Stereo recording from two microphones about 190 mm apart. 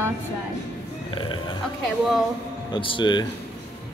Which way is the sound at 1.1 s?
25° left (ahead or behind).